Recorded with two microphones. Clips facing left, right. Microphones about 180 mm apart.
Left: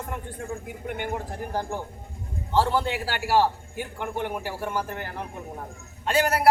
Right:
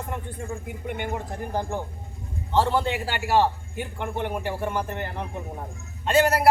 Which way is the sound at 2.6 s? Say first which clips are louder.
Right 1 dB; 5° left (ahead or behind).